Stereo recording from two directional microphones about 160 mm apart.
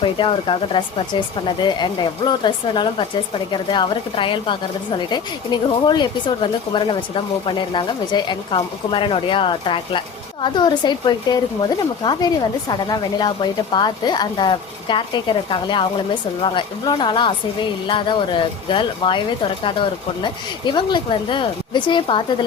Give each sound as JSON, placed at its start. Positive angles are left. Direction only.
{"t": 0.0, "sound": "speech", "side_deg": 30}
{"t": 20.2, "sound": "speech", "side_deg": 30}